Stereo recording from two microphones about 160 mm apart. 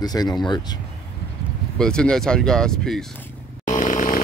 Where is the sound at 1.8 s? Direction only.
5° left (ahead or behind).